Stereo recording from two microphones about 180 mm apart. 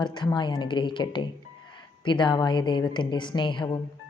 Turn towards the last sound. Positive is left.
turn(degrees=25)  # may be behind; listen again after turning